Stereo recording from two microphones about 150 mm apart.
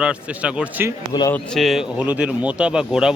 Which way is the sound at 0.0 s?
5° right (ahead or behind).